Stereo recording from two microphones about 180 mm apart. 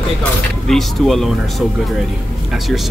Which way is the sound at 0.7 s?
Centre (ahead or behind).